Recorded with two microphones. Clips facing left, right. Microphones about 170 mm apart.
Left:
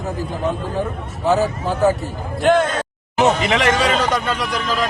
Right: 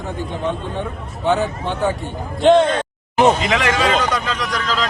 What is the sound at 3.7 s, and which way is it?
Speech, 30° left (ahead or behind).